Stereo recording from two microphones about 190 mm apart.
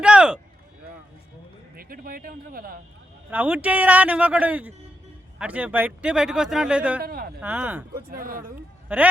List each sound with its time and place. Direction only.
0.0 s a sound: 5° right (ahead or behind)
1.7 s speech: 50° right (ahead or behind)
3.2 s a man's voice: 10° right (ahead or behind)
7.0 s speech: 50° right (ahead or behind)
7.4 s a man's voice: 10° right (ahead or behind)
8.1 s speech: 50° right (ahead or behind)
8.9 s a man's voice: 5° right (ahead or behind)